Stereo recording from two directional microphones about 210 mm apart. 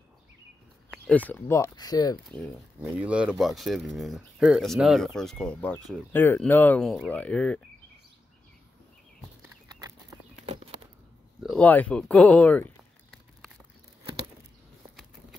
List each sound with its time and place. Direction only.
0.8 s speech: 5° left (ahead or behind)
2.8 s speech: 5° right (ahead or behind)
10.4 s a sound: 30° right (ahead or behind)
11.4 s speech: 5° left (ahead or behind)